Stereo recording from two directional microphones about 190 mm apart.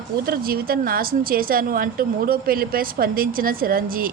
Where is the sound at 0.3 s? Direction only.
50° right (ahead or behind).